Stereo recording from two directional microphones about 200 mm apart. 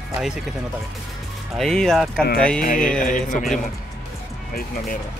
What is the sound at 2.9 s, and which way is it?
Speech, 40° left (ahead or behind).